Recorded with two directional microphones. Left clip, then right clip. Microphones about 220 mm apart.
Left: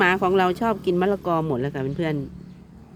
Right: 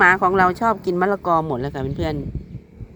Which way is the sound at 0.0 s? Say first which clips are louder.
Right 5 dB; 10° left (ahead or behind).